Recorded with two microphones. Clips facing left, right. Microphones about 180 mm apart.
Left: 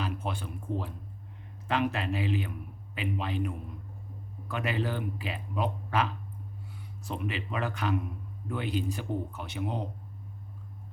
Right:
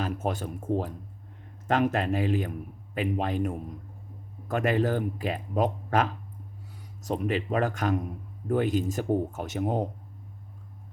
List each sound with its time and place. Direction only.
0.0 s a man's voice: 45° right (ahead or behind)